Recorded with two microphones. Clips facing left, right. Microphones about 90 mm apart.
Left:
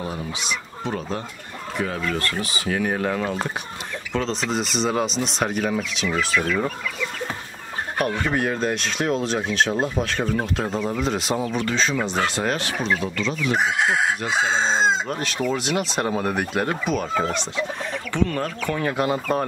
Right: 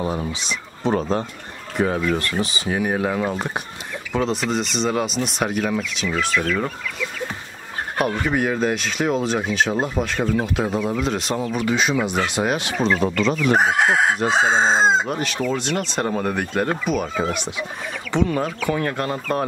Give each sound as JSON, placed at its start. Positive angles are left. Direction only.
{"t": 0.8, "sound": "speech", "side_deg": -30}
{"t": 2.1, "sound": "speech", "side_deg": -20}
{"t": 8.0, "sound": "speech", "side_deg": -5}
{"t": 11.6, "sound": "speech", "side_deg": -15}
{"t": 13.0, "sound": "speech", "side_deg": -50}
{"t": 15.0, "sound": "speech", "side_deg": 0}